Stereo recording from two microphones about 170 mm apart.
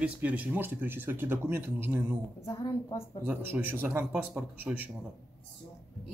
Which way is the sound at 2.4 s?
20° left (ahead or behind).